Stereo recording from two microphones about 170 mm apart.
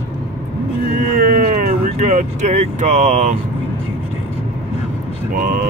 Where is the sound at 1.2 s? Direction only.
55° right (ahead or behind).